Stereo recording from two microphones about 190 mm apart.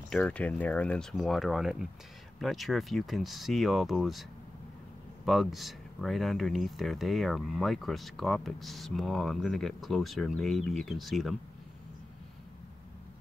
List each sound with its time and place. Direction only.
0.1 s speech: 5° left (ahead or behind)